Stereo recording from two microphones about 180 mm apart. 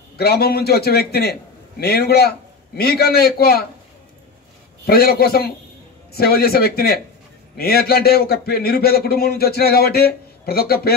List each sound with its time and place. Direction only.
0.2 s speech: 60° left (ahead or behind)
4.8 s speech: 60° left (ahead or behind)